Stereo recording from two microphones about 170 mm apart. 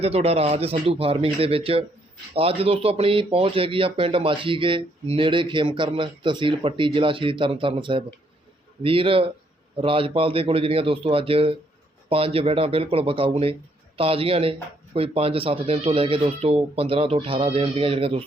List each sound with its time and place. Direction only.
0.0 s speech: 35° right (ahead or behind)